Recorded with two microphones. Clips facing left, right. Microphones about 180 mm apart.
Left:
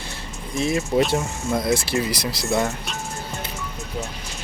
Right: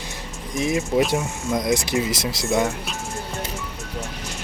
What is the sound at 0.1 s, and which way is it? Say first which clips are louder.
Speech: even; 15° right (ahead or behind).